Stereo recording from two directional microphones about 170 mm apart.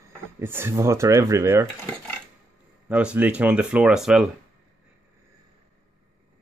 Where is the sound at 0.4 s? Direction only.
15° right (ahead or behind).